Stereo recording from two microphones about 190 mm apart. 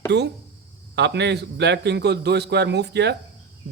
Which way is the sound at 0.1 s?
65° right (ahead or behind).